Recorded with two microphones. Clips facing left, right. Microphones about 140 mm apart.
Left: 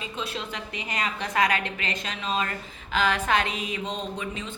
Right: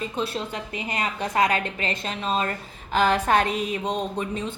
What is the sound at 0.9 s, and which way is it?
A woman's voice, 30° right (ahead or behind).